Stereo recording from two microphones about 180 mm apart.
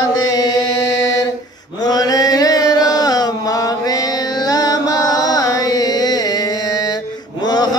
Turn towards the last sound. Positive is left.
turn(degrees=20)  # may be behind; listen again after turning